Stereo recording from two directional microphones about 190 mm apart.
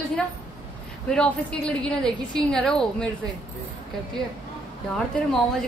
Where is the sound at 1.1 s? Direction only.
5° left (ahead or behind).